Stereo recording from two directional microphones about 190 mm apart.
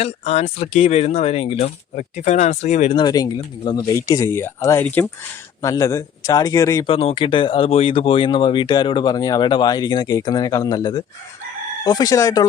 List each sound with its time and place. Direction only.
0.0 s speech: 35° left (ahead or behind)
2.9 s speech: 20° left (ahead or behind)
6.9 s speech: 30° left (ahead or behind)